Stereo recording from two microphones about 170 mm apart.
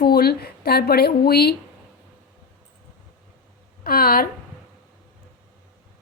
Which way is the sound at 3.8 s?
60° left (ahead or behind).